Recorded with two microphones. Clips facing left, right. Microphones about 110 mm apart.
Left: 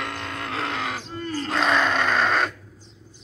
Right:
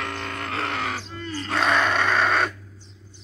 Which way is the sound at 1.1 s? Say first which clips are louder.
Left 3 dB; 40° left (ahead or behind).